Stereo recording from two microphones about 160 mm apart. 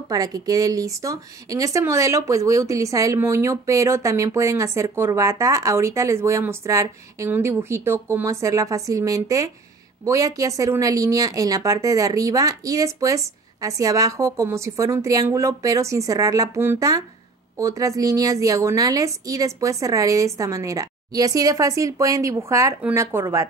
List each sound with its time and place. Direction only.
0.1 s speech: 20° right (ahead or behind)